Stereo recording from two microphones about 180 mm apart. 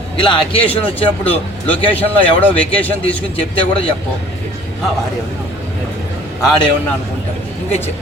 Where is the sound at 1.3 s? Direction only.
30° left (ahead or behind).